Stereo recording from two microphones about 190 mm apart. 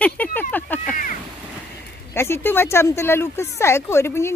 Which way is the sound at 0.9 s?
45° left (ahead or behind).